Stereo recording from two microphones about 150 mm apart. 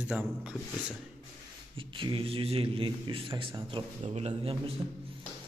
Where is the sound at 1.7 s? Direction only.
35° right (ahead or behind).